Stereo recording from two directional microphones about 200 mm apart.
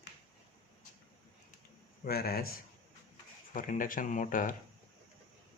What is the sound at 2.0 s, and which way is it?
Speech, 50° left (ahead or behind).